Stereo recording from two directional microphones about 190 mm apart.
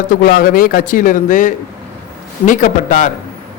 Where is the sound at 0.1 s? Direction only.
45° left (ahead or behind).